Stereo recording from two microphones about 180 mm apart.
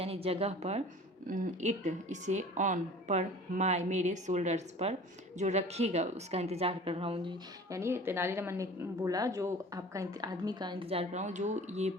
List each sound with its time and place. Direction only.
0.0 s a woman's voice: 35° right (ahead or behind)